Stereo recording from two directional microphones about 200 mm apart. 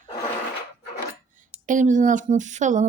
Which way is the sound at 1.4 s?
40° right (ahead or behind).